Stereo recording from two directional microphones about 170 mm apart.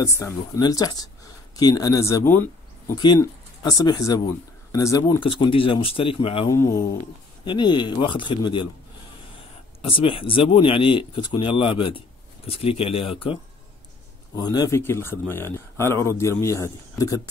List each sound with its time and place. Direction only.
0.0 s speech: 20° left (ahead or behind)
6.5 s speech: 15° left (ahead or behind)
9.8 s speech: 30° left (ahead or behind)